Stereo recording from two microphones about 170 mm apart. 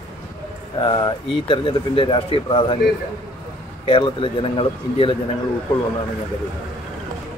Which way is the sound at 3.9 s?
30° left (ahead or behind).